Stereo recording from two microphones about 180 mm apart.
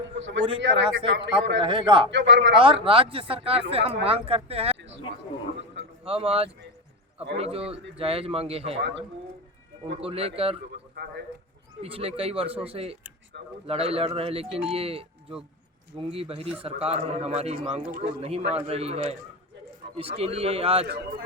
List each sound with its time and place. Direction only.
0.2 s a man's voice: 90° right
1.6 s a man's voice: 25° right (ahead or behind)
2.0 s a man's voice: 90° right
2.6 s a man's voice: 30° right (ahead or behind)
4.8 s a sound: 85° right
6.1 s a man's voice: 30° right (ahead or behind)
8.8 s speech: 80° right
10.0 s a man's voice: 30° right (ahead or behind)
10.9 s speech: 65° right (ahead or behind)
11.8 s a man's voice: 30° right (ahead or behind)
20.8 s speech: 60° right (ahead or behind)